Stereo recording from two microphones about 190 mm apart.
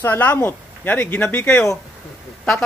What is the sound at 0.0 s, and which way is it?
Speech, 10° left (ahead or behind).